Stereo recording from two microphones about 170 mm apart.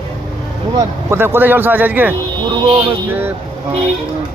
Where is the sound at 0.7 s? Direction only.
15° right (ahead or behind).